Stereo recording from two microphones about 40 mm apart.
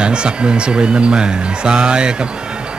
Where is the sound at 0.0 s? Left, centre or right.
Right.